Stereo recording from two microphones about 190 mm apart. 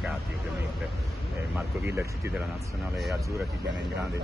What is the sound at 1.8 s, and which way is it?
Speech, 15° right (ahead or behind).